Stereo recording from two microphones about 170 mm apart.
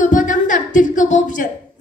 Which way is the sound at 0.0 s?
50° left (ahead or behind).